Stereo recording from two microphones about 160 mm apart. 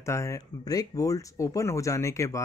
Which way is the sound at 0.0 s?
20° left (ahead or behind).